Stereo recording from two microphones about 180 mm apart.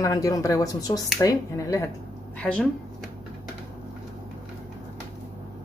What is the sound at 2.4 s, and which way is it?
Speech, 5° left (ahead or behind).